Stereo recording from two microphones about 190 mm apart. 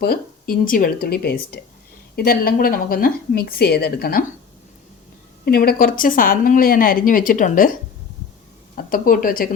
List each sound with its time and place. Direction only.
0.0 s a woman's voice: 50° left (ahead or behind)
5.5 s a woman's voice: 50° left (ahead or behind)
8.7 s speech: 45° left (ahead or behind)